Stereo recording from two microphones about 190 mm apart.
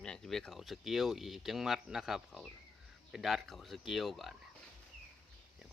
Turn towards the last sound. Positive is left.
turn(degrees=0)  # may be behind; listen again after turning